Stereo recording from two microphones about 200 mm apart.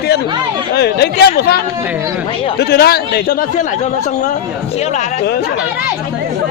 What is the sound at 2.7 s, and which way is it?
Speech, 50° left (ahead or behind).